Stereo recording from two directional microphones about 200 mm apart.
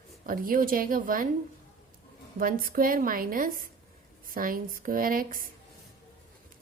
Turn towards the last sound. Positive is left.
turn(degrees=-45)  # may be behind; listen again after turning